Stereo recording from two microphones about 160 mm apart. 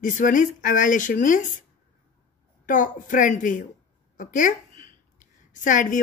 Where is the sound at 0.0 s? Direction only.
55° left (ahead or behind).